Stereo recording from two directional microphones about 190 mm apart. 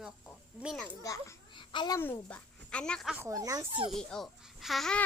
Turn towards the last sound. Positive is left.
turn(degrees=0)  # may be behind; listen again after turning